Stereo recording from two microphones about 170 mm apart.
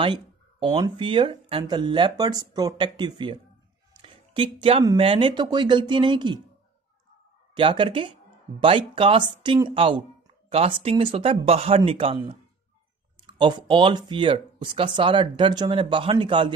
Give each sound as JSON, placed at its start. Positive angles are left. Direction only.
{"t": 0.0, "sound": "speech", "side_deg": -30}
{"t": 3.9, "sound": "a sound", "side_deg": -30}
{"t": 4.9, "sound": "speech", "side_deg": -30}
{"t": 7.5, "sound": "speech", "side_deg": -30}